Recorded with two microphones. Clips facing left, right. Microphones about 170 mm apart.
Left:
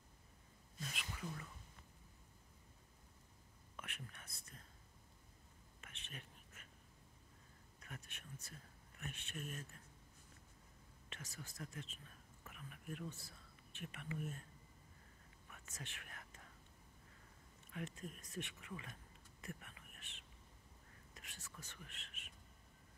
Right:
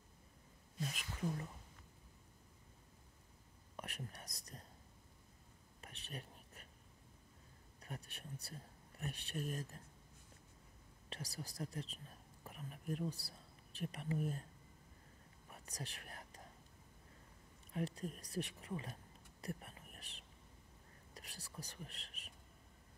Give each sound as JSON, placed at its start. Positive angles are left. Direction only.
{"t": 0.7, "sound": "speech", "side_deg": -40}
{"t": 3.7, "sound": "speech", "side_deg": -40}
{"t": 5.8, "sound": "whispering", "side_deg": -35}
{"t": 7.8, "sound": "speech", "side_deg": -35}
{"t": 11.1, "sound": "speech", "side_deg": -35}
{"t": 15.4, "sound": "whispering", "side_deg": -35}
{"t": 17.6, "sound": "speech", "side_deg": -35}
{"t": 19.4, "sound": "whispering", "side_deg": -35}